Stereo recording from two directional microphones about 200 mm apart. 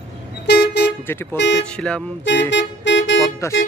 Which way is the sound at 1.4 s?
65° left (ahead or behind).